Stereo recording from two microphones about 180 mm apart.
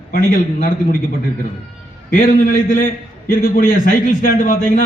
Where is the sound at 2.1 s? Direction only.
50° left (ahead or behind).